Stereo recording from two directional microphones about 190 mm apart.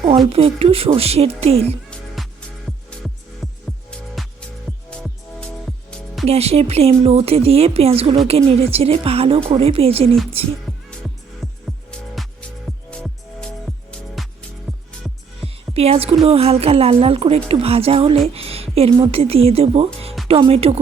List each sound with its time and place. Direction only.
0.3 s speech: 30° right (ahead or behind)
2.9 s music: 5° left (ahead or behind)
6.2 s speech: 35° right (ahead or behind)
11.9 s music: centre (ahead or behind)
15.4 s music: 30° right (ahead or behind)
16.2 s speech: 30° right (ahead or behind)